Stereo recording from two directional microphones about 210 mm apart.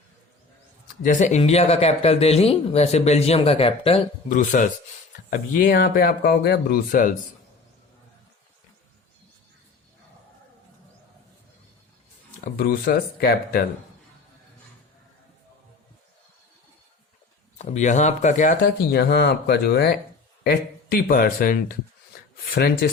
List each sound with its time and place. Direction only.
1.0 s speech: 35° left (ahead or behind)
12.5 s speech: 45° left (ahead or behind)
17.6 s speech: 35° left (ahead or behind)
18.9 s speech: 50° left (ahead or behind)